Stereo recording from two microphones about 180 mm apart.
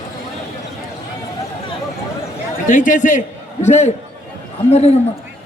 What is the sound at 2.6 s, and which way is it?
A man's voice, 45° left (ahead or behind).